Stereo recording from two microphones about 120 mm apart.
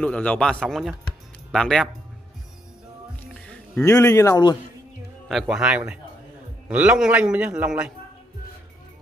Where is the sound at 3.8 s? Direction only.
25° left (ahead or behind).